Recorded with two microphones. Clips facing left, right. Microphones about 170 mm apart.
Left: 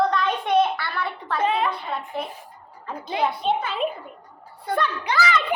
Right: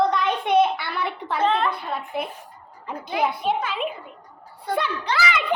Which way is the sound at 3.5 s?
30° left (ahead or behind).